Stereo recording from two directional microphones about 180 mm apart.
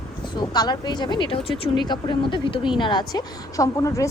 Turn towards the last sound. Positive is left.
turn(degrees=20)  # may be behind; listen again after turning